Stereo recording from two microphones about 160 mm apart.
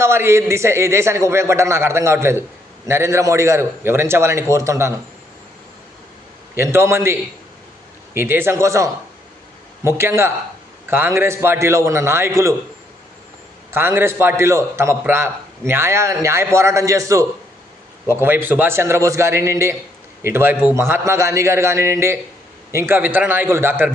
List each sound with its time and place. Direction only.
0.0 s a man's voice: 15° right (ahead or behind)
6.6 s a man's voice: 15° right (ahead or behind)
13.7 s a man's voice: 15° right (ahead or behind)